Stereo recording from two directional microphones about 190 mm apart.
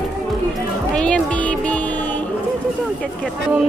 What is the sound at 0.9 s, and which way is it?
Music, 5° left (ahead or behind).